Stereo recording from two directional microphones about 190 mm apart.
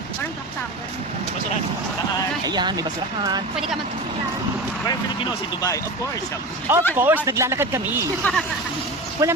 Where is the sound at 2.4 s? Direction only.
20° right (ahead or behind).